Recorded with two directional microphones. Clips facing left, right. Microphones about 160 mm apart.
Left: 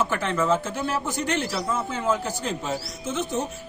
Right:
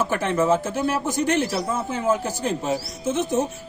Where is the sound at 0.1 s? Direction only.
50° right (ahead or behind).